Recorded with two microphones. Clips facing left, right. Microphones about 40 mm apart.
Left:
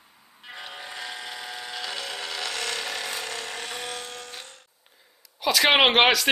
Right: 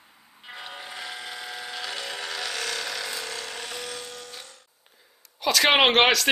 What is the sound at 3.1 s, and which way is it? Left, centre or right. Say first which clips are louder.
Rub: left 1 dB; left.